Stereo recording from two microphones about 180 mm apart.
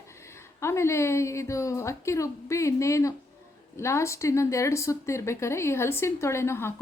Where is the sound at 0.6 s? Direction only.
15° left (ahead or behind).